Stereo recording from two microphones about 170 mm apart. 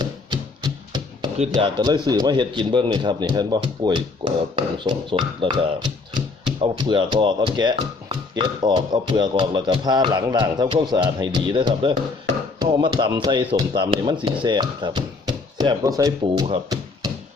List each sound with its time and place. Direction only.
0.0 s music: 25° right (ahead or behind)
1.5 s speech: 25° right (ahead or behind)